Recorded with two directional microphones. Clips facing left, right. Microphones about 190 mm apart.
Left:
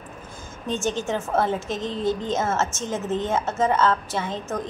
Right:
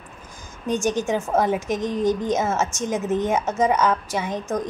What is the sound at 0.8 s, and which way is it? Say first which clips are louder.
A woman's voice: right 2 dB; 15° right (ahead or behind).